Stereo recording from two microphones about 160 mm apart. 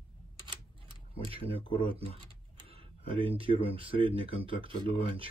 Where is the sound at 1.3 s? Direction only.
35° right (ahead or behind).